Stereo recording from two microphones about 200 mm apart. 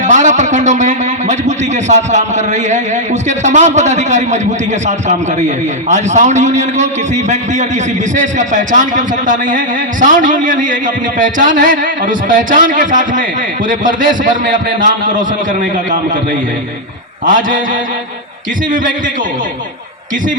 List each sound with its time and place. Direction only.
0.0 s a man's voice: 40° right (ahead or behind)
17.2 s a man's voice: 45° right (ahead or behind)
18.7 s a man's voice: 40° right (ahead or behind)